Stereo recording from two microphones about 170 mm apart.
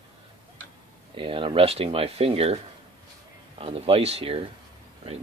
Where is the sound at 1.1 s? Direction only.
30° right (ahead or behind).